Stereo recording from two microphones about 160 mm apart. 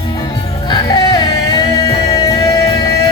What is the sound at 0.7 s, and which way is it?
Music, 25° left (ahead or behind).